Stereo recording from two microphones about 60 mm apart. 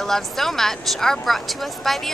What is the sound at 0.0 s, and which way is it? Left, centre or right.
Speech, centre.